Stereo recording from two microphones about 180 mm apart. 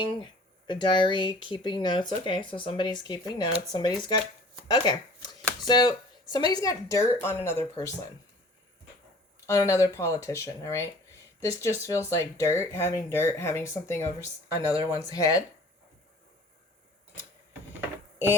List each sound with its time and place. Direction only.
0.7 s speech: 25° left (ahead or behind)
4.7 s shuffling cards: 25° left (ahead or behind)
5.6 s speech: 25° left (ahead or behind)
9.5 s speech: 15° left (ahead or behind)